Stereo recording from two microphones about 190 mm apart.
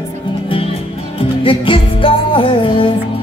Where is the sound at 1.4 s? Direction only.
25° left (ahead or behind).